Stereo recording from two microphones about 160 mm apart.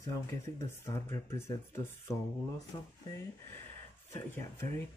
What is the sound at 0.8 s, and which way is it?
Speech, 20° left (ahead or behind).